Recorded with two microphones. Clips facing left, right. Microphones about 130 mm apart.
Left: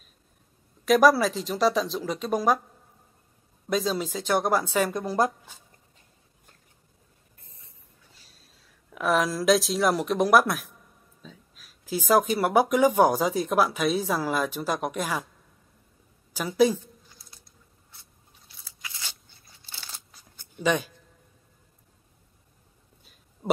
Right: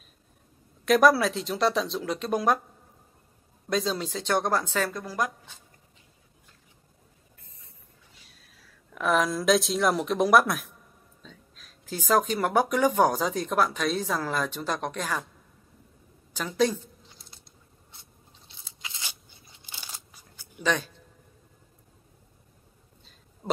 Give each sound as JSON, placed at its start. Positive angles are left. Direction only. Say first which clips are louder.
{"t": 0.8, "sound": "speech", "louder": "left 1 dB", "side_deg": 0}
{"t": 3.6, "sound": "speech", "louder": "left 1 dB", "side_deg": 0}
{"t": 8.5, "sound": "a sound", "louder": "right 2 dB", "side_deg": 25}
{"t": 8.9, "sound": "speech", "louder": "even", "side_deg": 0}
{"t": 16.3, "sound": "speech", "louder": "left 4 dB", "side_deg": 10}
{"t": 17.2, "sound": "mechanisms", "louder": "right 2 dB", "side_deg": -25}
{"t": 18.5, "sound": "a sound", "louder": "even", "side_deg": -25}
{"t": 20.1, "sound": "zipper", "louder": "right 2 dB", "side_deg": -10}
{"t": 20.6, "sound": "speech", "louder": "left 3 dB", "side_deg": 10}
{"t": 23.4, "sound": "speech", "louder": "left 4 dB", "side_deg": 20}